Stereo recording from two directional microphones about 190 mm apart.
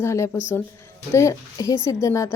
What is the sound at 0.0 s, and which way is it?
Speech, 15° left (ahead or behind).